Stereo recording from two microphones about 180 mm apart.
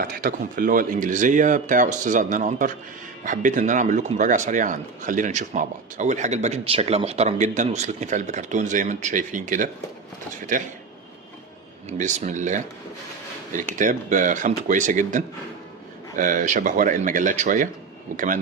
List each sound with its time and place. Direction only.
0.0 s speech: 55° right (ahead or behind)
11.9 s speech: 40° right (ahead or behind)